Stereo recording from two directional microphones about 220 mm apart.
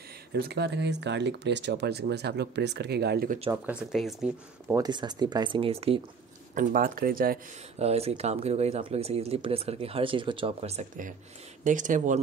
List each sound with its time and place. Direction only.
0.3 s speech: 50° right (ahead or behind)
3.6 s speech: centre (ahead or behind)
4.6 s speech: 15° right (ahead or behind)
6.5 s speech: 40° right (ahead or behind)
7.8 s speech: 30° right (ahead or behind)